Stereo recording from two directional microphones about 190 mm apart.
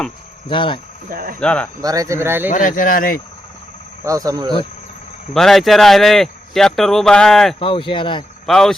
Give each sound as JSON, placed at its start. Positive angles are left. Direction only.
{"t": 0.4, "sound": "speech", "side_deg": 25}
{"t": 1.1, "sound": "cricket", "side_deg": -50}
{"t": 1.4, "sound": "speech", "side_deg": 5}
{"t": 1.8, "sound": "speech", "side_deg": -20}
{"t": 2.5, "sound": "speech", "side_deg": 45}
{"t": 4.0, "sound": "speech", "side_deg": -20}
{"t": 5.3, "sound": "speech", "side_deg": 0}
{"t": 7.6, "sound": "speech", "side_deg": 25}
{"t": 8.4, "sound": "speech", "side_deg": 5}